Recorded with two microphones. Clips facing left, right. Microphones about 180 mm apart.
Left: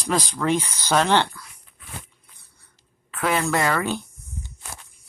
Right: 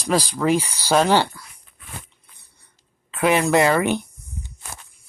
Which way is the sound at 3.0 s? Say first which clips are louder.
Right 5 dB; 20° right (ahead or behind).